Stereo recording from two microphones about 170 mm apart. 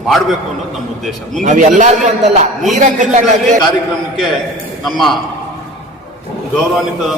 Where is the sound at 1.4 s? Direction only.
45° right (ahead or behind).